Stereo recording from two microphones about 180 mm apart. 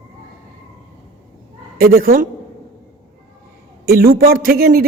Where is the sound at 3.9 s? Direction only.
55° right (ahead or behind).